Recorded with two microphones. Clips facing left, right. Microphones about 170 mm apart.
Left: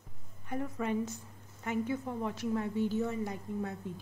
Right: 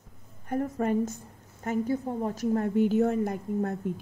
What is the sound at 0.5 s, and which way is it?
Speech, 45° right (ahead or behind).